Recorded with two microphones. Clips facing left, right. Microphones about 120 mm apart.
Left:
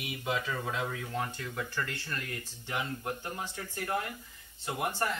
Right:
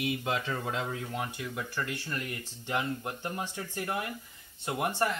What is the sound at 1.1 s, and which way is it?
Speech, 15° right (ahead or behind).